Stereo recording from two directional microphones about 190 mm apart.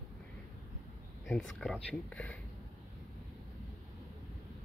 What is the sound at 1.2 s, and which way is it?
Speech, centre (ahead or behind).